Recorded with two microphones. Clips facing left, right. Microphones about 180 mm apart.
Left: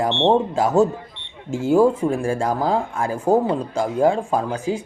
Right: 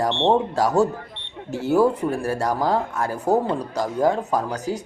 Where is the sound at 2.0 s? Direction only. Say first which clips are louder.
Left 2 dB; 10° left (ahead or behind).